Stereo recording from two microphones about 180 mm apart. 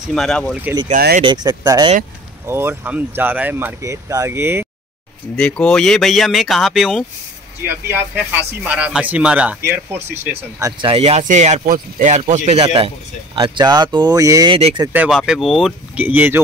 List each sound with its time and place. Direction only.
0.1 s speech: 5° left (ahead or behind)
1.2 s speech: 25° right (ahead or behind)
5.3 s speech: 5° left (ahead or behind); by 10.7 s 15° right (ahead or behind)
10.8 s speech: 30° right (ahead or behind)
14.5 s speech: 30° right (ahead or behind)
14.9 s speech: 5° right (ahead or behind)